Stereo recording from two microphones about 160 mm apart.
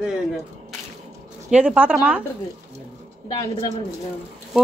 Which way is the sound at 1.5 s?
5° right (ahead or behind).